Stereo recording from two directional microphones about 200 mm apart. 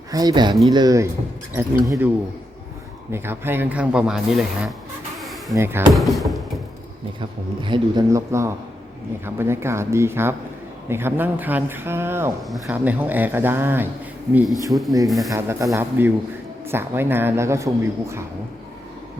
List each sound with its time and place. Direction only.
0.1 s speech: 20° right (ahead or behind)
3.1 s speech: 10° right (ahead or behind)
5.2 s a sound: centre (ahead or behind)
5.5 s speech: 10° right (ahead or behind)
5.9 s speech: centre (ahead or behind)
7.6 s speech: 20° right (ahead or behind)
14.3 s speech: centre (ahead or behind)
15.3 s speech: 15° right (ahead or behind)